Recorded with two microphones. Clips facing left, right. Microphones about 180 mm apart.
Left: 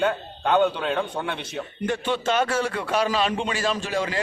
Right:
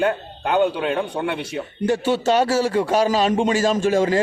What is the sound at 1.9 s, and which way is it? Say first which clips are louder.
A man's voice: right 6 dB; 40° right (ahead or behind).